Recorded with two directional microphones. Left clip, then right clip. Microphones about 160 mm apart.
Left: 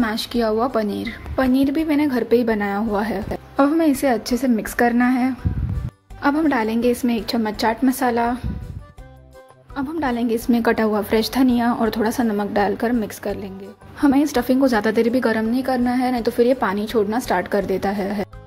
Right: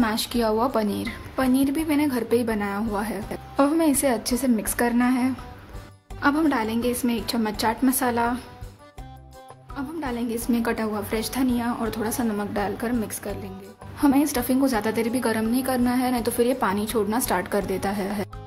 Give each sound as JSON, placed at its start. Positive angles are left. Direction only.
{"t": 0.0, "sound": "a woman's voice", "side_deg": 15}
{"t": 9.8, "sound": "a woman's voice", "side_deg": 40}